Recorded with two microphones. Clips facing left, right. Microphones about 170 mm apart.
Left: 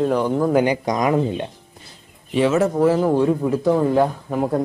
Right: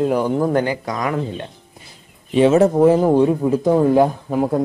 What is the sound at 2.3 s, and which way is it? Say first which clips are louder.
Speech: right 4 dB; 25° right (ahead or behind).